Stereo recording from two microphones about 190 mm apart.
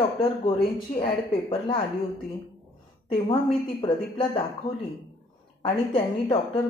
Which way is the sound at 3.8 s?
25° left (ahead or behind).